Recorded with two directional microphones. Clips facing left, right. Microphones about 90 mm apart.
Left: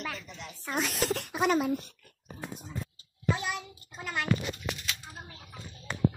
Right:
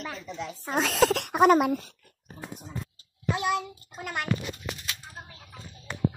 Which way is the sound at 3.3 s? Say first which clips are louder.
Right 8 dB; 65° right (ahead or behind).